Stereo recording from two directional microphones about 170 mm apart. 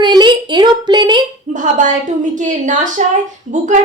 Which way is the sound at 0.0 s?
25° right (ahead or behind).